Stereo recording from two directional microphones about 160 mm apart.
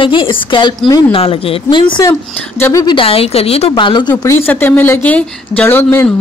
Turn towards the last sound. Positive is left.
turn(degrees=15)  # may be behind; listen again after turning